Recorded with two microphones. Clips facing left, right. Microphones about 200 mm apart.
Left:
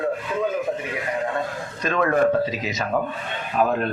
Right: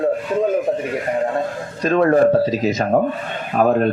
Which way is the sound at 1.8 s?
35° right (ahead or behind).